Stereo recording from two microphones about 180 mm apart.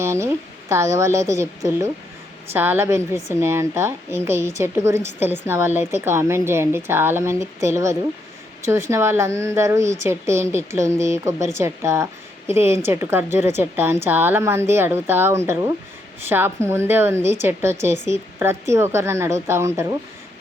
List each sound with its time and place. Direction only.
0.0 s a woman's voice: 15° right (ahead or behind)